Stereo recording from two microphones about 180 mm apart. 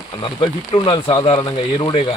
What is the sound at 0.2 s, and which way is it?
Speech, 25° left (ahead or behind).